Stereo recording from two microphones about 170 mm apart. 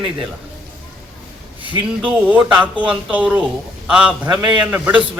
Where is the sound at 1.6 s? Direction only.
30° right (ahead or behind).